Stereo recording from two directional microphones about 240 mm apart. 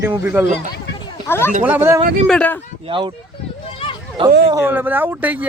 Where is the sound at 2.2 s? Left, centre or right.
Centre.